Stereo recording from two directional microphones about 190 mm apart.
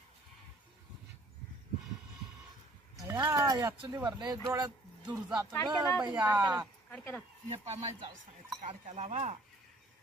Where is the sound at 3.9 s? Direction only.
20° right (ahead or behind).